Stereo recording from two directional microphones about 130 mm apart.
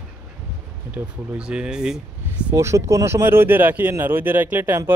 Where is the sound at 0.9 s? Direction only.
15° right (ahead or behind).